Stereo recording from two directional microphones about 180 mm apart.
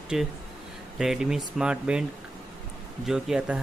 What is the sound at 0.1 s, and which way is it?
Speech, 5° right (ahead or behind).